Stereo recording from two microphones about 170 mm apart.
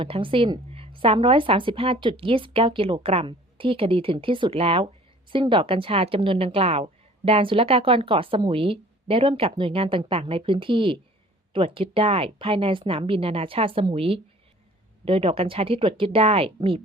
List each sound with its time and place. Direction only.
0.0 s a woman's voice: 30° right (ahead or behind)